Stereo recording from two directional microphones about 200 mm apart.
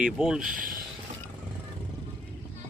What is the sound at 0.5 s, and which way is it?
Speech, 45° right (ahead or behind).